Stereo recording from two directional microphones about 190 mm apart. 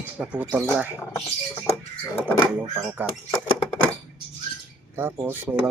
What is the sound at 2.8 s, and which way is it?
Speech, 5° right (ahead or behind).